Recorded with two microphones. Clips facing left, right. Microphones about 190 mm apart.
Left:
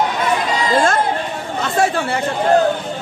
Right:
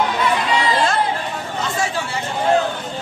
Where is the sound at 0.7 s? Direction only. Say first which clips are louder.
Left 6 dB; 45° left (ahead or behind).